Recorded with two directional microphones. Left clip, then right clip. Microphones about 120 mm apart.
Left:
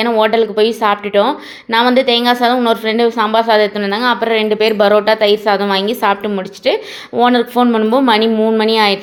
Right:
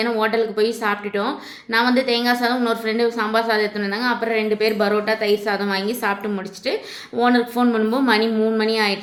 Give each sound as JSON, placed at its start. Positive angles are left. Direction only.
{"t": 0.0, "sound": "a woman's voice", "side_deg": 25}